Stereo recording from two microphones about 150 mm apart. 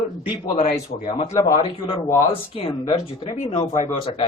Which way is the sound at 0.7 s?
30° left (ahead or behind).